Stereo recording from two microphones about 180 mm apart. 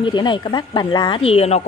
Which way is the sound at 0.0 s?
25° left (ahead or behind).